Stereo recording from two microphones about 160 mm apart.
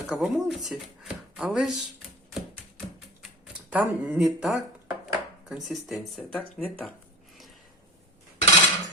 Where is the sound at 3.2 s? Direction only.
5° right (ahead or behind).